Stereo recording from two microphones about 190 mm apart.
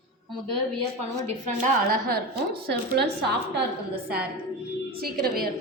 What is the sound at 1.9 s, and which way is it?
Speech, 50° right (ahead or behind).